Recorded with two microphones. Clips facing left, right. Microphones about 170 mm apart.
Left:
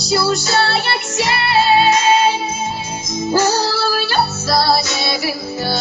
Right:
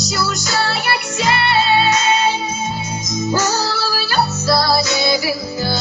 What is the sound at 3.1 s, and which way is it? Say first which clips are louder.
Music: left 3 dB; 30° left (ahead or behind).